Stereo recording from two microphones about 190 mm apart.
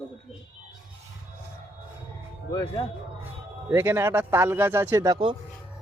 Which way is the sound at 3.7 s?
15° right (ahead or behind).